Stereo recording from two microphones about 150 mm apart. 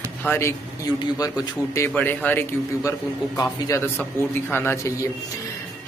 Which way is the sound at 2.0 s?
10° left (ahead or behind).